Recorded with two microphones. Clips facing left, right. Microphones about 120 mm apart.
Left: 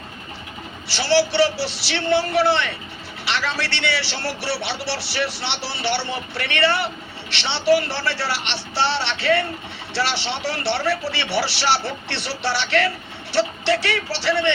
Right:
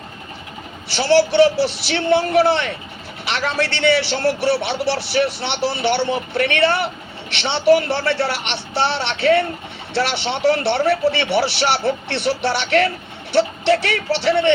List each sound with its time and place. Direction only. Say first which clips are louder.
0.9 s a man's voice: right 4 dB; 50° right (ahead or behind)